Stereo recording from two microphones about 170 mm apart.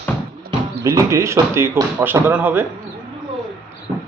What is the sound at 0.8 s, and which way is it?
Speech, 20° right (ahead or behind).